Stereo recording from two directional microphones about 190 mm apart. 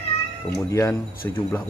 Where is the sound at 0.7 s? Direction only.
15° left (ahead or behind).